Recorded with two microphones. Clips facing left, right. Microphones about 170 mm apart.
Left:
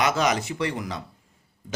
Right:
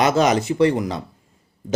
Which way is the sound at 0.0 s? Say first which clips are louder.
Right 6 dB; 30° right (ahead or behind).